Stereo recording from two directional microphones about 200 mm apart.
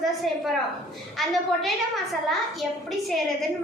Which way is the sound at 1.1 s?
Centre (ahead or behind).